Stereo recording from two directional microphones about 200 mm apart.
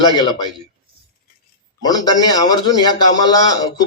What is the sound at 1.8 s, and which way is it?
A man's voice, 20° left (ahead or behind).